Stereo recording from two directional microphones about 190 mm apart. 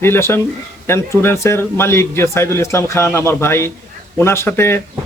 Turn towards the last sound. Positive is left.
turn(degrees=10)  # may be behind; listen again after turning